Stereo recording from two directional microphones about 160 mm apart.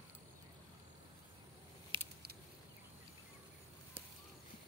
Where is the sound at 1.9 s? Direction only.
30° right (ahead or behind).